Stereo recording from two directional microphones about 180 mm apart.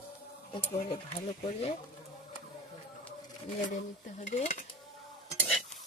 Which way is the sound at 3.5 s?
40° left (ahead or behind).